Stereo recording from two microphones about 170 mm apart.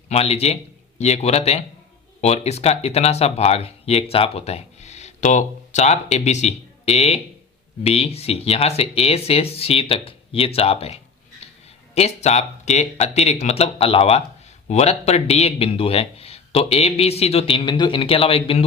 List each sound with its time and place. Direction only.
0.1 s speech: 35° left (ahead or behind)